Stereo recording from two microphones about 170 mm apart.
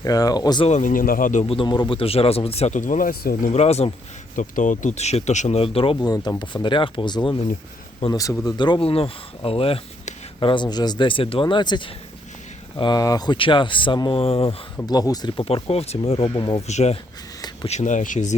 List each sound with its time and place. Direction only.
0.0 s speech: 20° left (ahead or behind)
0.7 s speech: 50° left (ahead or behind)
1.5 s speech: 30° left (ahead or behind); by 3.5 s 55° left (ahead or behind)
3.5 s speech: 40° left (ahead or behind)
4.4 s speech: 50° left (ahead or behind); by 14.5 s 35° left (ahead or behind)
14.8 s speech: 20° left (ahead or behind); by 18.3 s 45° left (ahead or behind)